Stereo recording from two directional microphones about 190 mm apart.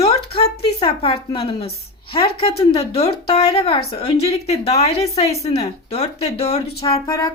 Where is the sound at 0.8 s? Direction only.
30° left (ahead or behind).